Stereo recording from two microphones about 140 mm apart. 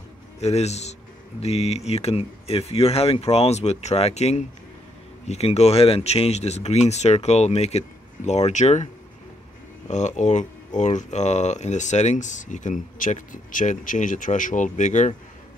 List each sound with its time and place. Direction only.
0.4 s a man's voice: 50° left (ahead or behind)
9.8 s speech: 60° left (ahead or behind)